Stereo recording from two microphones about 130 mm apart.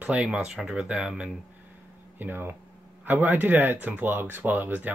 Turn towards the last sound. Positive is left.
turn(degrees=-15)  # may be behind; listen again after turning